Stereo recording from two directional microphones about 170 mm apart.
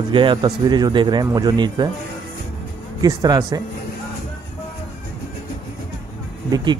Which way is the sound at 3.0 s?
25° right (ahead or behind).